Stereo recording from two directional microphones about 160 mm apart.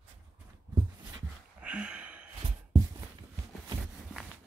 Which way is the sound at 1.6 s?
5° right (ahead or behind).